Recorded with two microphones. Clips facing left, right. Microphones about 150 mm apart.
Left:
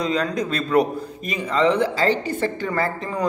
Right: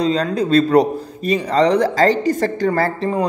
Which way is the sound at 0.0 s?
30° right (ahead or behind).